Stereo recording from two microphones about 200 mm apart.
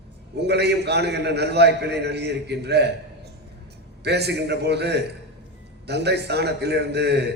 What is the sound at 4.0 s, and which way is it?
A man's voice, 55° right (ahead or behind).